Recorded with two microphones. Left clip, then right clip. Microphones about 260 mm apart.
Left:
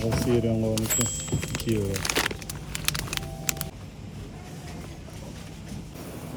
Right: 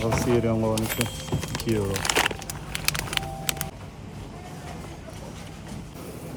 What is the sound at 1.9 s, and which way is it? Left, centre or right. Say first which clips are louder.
Crumpling: right 5 dB; centre.